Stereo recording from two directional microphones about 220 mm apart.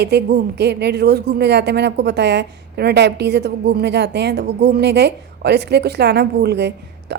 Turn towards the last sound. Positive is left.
turn(degrees=-50)  # may be behind; listen again after turning